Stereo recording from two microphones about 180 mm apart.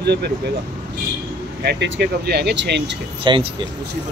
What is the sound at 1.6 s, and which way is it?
Speech, 65° right (ahead or behind).